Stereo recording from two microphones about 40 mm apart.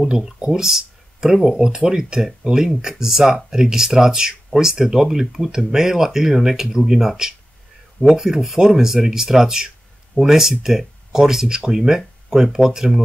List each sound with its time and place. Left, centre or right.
0.1 s speech: centre